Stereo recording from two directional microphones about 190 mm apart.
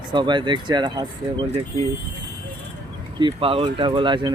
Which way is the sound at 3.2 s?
30° right (ahead or behind).